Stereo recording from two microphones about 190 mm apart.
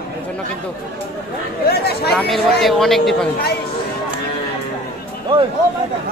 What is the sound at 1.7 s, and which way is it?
Speech, 55° left (ahead or behind).